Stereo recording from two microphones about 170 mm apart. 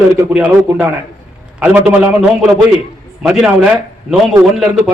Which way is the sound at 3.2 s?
5° right (ahead or behind).